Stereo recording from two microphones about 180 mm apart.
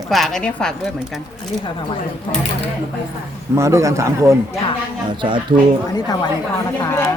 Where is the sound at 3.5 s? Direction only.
15° right (ahead or behind).